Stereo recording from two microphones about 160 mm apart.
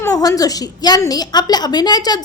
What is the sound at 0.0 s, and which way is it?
A woman's voice, 20° left (ahead or behind).